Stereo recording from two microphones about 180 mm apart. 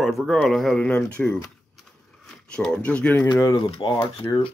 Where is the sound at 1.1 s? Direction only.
5° left (ahead or behind).